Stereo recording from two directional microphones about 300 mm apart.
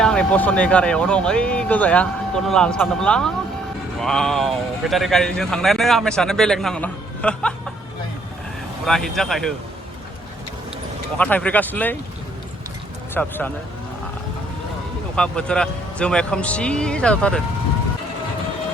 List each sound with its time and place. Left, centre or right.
0.0 s a man's voice: centre
8.9 s a man's voice: centre
11.2 s a man's voice: centre
13.1 s a man's voice: centre
15.1 s a man's voice: centre